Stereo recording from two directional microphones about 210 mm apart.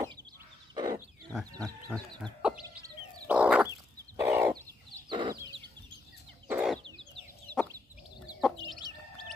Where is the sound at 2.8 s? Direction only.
5° right (ahead or behind).